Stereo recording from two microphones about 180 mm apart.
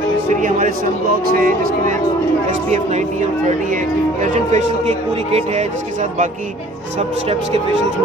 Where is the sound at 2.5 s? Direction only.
40° right (ahead or behind).